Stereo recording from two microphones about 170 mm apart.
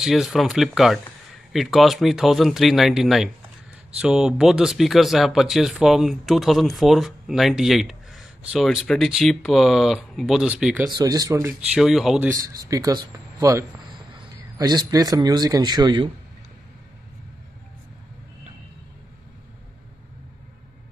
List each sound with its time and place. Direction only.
0.0 s speech: centre (ahead or behind)
10.9 s speech: 25° right (ahead or behind)
11.7 s speech: centre (ahead or behind)
12.3 s a man's voice: 20° right (ahead or behind)